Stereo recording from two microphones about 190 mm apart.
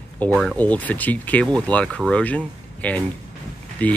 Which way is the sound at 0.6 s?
10° left (ahead or behind).